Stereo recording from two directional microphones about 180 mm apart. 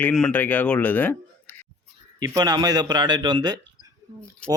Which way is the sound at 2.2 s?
20° right (ahead or behind).